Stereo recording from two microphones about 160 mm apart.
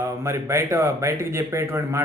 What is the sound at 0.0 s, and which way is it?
A man's voice, 15° right (ahead or behind).